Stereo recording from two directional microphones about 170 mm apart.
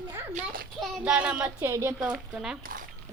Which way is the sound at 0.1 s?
15° right (ahead or behind).